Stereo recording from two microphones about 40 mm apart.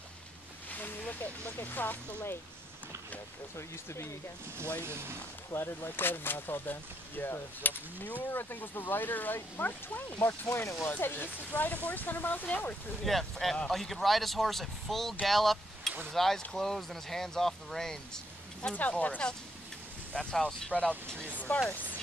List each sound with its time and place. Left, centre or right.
0.7 s speech: left
4.8 s speech: right
5.5 s speech: left
8.5 s speech: left
10.2 s speech: left
11.1 s speech: left
13.0 s speech: centre
18.8 s speech: left